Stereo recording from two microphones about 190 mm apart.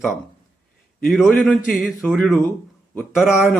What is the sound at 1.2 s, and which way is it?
Speech, 5° left (ahead or behind).